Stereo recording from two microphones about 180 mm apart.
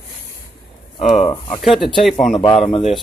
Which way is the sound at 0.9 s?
Centre (ahead or behind).